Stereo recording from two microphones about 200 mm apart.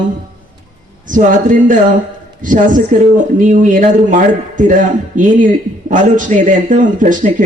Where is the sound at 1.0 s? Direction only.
40° right (ahead or behind).